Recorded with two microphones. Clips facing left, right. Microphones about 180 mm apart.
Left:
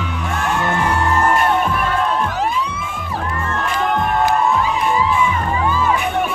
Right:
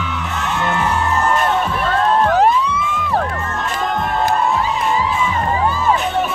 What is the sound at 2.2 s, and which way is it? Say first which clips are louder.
Music: right 7 dB; 60° right (ahead or behind).